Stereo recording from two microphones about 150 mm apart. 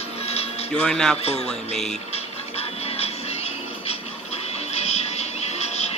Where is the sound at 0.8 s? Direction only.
5° left (ahead or behind).